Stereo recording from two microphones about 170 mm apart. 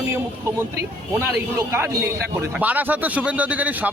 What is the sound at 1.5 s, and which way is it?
A man's voice, 15° right (ahead or behind).